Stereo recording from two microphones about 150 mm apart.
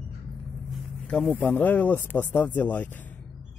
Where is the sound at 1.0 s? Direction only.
5° left (ahead or behind).